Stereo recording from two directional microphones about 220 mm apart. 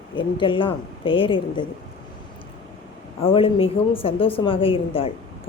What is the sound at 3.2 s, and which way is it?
A woman's voice, 25° left (ahead or behind).